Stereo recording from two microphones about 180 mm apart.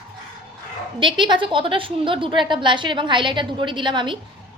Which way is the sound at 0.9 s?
25° right (ahead or behind).